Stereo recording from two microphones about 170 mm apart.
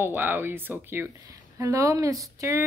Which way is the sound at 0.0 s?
10° right (ahead or behind).